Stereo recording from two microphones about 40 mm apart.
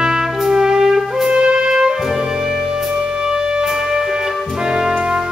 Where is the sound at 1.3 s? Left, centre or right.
Right.